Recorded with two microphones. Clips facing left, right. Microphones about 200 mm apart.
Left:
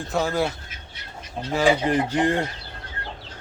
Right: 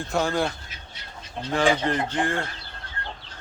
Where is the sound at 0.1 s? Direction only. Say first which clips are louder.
Left 1 dB; 5° left (ahead or behind).